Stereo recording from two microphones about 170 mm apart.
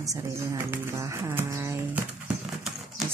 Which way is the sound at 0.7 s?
15° right (ahead or behind).